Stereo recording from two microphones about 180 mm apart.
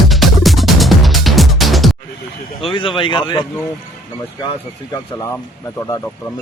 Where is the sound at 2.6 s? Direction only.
30° left (ahead or behind).